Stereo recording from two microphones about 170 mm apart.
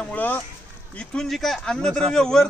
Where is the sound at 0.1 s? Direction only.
10° left (ahead or behind).